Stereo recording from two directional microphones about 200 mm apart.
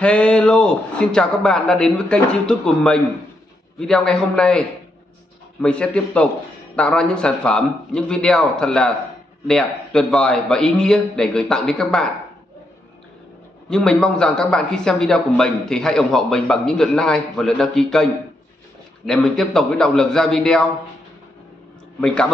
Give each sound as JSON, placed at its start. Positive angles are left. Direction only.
{"t": 0.0, "sound": "a man's voice", "side_deg": 5}
{"t": 13.7, "sound": "a man's voice", "side_deg": 5}
{"t": 19.0, "sound": "a man's voice", "side_deg": 5}
{"t": 22.0, "sound": "a man's voice", "side_deg": 5}